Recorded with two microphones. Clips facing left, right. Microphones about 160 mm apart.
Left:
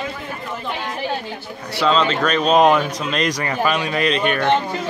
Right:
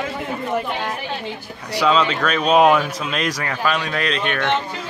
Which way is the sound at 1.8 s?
5° right (ahead or behind).